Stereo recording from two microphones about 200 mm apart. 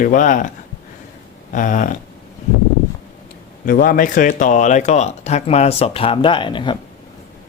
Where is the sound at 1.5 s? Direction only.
40° left (ahead or behind).